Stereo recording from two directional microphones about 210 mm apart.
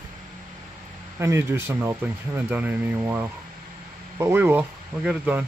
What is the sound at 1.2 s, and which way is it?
Speech, 15° right (ahead or behind).